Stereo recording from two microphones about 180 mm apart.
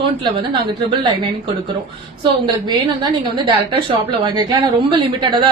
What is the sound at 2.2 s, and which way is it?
A woman's voice, 25° right (ahead or behind).